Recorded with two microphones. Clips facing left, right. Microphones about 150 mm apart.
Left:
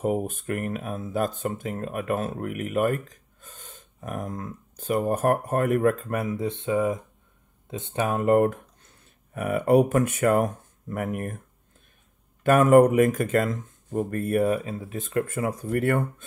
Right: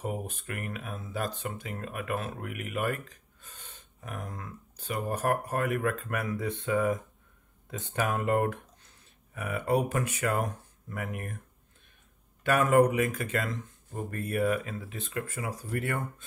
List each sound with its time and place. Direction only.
0.0 s speech: 45° left (ahead or behind)
6.3 s speech: 25° left (ahead or behind)
8.1 s speech: 40° left (ahead or behind)
9.3 s speech: 55° left (ahead or behind)
12.4 s speech: 45° left (ahead or behind)
14.6 s speech: 30° left (ahead or behind)
14.9 s speech: 45° left (ahead or behind)